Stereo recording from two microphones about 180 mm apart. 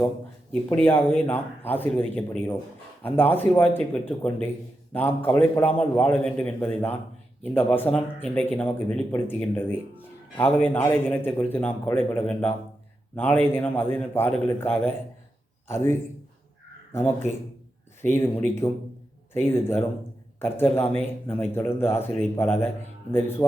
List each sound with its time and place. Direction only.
0.5 s a man's voice: 10° left (ahead or behind)